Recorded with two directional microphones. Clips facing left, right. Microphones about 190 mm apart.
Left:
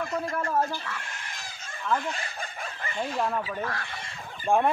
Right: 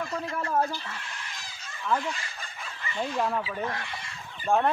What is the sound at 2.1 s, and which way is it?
Chicken, 50° left (ahead or behind).